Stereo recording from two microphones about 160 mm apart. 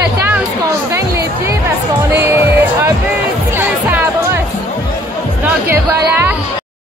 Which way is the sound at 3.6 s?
10° right (ahead or behind).